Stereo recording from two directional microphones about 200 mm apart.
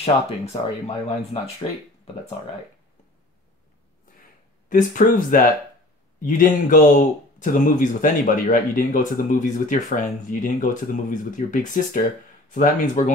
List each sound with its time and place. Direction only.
0.0 s speech: 30° left (ahead or behind)
4.6 s speech: 40° left (ahead or behind)